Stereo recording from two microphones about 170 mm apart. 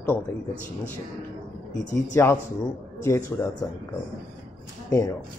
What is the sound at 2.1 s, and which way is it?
Speech, 20° left (ahead or behind).